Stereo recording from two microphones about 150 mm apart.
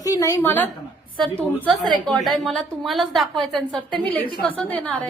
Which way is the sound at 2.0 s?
Centre (ahead or behind).